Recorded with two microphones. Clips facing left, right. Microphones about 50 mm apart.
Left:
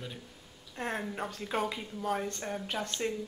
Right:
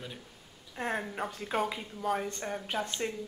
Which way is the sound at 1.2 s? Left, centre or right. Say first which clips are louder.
Even; centre.